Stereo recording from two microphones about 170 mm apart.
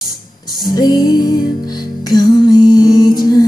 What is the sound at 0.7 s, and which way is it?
Music, 25° left (ahead or behind).